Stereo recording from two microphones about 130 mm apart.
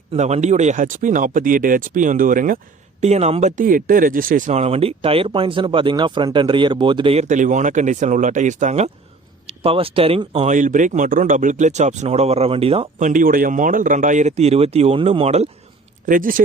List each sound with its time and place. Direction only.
0.1 s speech: 55° right (ahead or behind); by 2.6 s 90° right
3.0 s speech: 55° right (ahead or behind)
7.3 s speech: 75° right (ahead or behind)
9.6 s speech: 45° right (ahead or behind)
10.4 s speech: 80° right; by 12.9 s 50° right (ahead or behind)
13.0 s speech: 80° right; by 15.4 s 55° right (ahead or behind)
16.0 s speech: 90° right